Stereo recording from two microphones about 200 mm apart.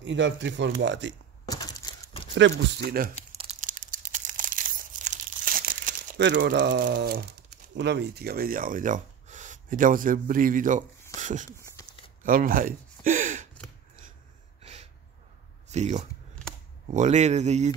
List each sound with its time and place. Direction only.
0.0 s speech: 65° right (ahead or behind)
1.5 s crumpling: 20° left (ahead or behind)
2.3 s speech: 60° right (ahead or behind)
3.3 s crumpling: 35° right (ahead or behind)
6.1 s speech: 60° right (ahead or behind); by 10.8 s 40° right (ahead or behind)
11.1 s a sound: 40° right (ahead or behind)
14.6 s a sound: 30° right (ahead or behind)
15.7 s speech: 35° right (ahead or behind)